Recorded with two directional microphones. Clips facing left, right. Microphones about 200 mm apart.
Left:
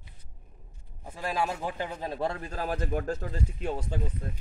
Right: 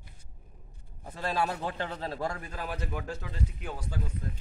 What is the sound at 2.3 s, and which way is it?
A man's voice, 35° left (ahead or behind).